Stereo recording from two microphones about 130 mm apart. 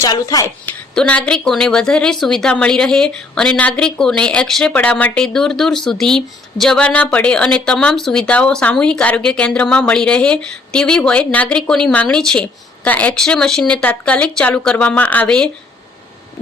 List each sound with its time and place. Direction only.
0.0 s speech: 25° left (ahead or behind)
0.7 s a woman's voice: 10° left (ahead or behind)